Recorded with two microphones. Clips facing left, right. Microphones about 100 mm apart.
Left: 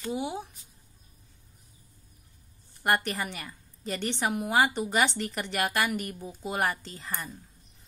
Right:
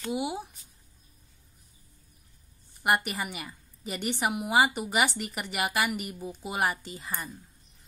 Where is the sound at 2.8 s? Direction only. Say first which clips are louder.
Even; 10° right (ahead or behind).